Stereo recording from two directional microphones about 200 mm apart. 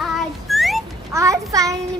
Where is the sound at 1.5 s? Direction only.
15° right (ahead or behind).